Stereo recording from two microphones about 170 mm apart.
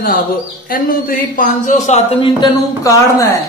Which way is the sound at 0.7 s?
55° left (ahead or behind).